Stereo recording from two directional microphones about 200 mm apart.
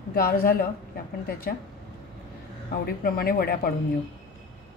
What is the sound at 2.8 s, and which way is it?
Speech, 50° left (ahead or behind).